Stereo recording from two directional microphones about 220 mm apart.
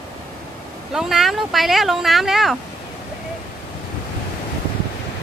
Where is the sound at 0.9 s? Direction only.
Centre (ahead or behind).